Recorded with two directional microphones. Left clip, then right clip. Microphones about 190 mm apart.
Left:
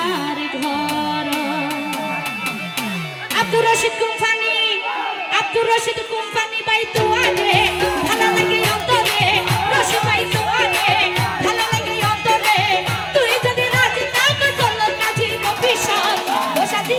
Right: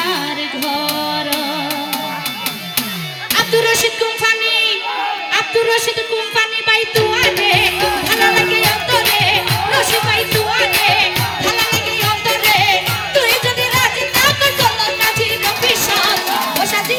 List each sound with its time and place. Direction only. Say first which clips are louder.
3.3 s music: right 2 dB; 35° right (ahead or behind)
6.3 s music: right 4 dB; 30° right (ahead or behind)